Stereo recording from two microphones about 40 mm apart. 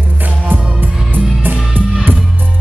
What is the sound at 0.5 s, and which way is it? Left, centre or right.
Music, right.